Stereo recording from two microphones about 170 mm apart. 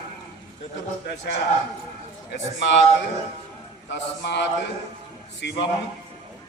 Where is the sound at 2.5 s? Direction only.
90° left.